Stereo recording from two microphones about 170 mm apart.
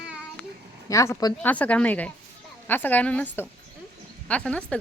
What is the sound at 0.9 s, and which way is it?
Speech, 20° left (ahead or behind).